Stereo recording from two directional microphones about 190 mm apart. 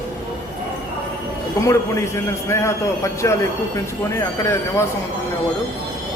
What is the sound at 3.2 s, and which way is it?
Speech, 15° left (ahead or behind).